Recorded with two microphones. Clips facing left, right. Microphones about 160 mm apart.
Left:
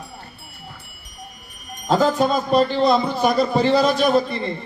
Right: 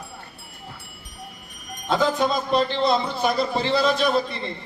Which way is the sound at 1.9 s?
40° left (ahead or behind).